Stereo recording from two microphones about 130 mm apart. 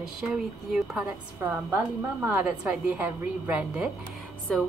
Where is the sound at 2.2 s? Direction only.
10° right (ahead or behind).